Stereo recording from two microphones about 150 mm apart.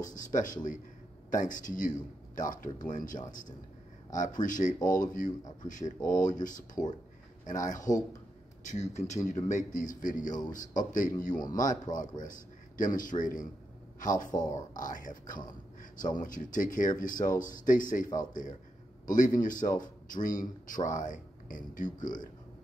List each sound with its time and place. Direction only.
0.0 s a man's voice: 60° left (ahead or behind)